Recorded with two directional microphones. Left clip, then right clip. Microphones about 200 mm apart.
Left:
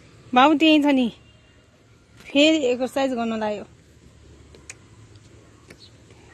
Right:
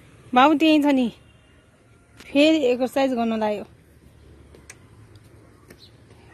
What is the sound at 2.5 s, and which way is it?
Speech, 15° right (ahead or behind).